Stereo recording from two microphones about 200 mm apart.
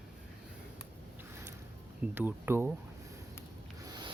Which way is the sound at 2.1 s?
10° right (ahead or behind).